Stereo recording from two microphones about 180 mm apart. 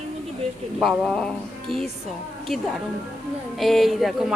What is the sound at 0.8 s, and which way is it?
Speech, centre (ahead or behind).